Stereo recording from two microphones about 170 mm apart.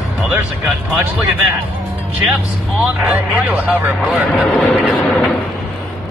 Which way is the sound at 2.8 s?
5° right (ahead or behind).